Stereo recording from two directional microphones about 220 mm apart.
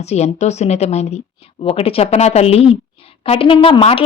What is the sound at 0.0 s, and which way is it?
A woman's voice, 30° left (ahead or behind).